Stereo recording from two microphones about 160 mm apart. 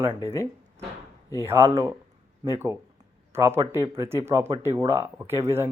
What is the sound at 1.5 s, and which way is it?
Speech, 20° right (ahead or behind).